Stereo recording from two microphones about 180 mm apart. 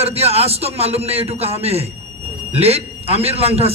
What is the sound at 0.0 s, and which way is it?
A man's voice, 35° right (ahead or behind).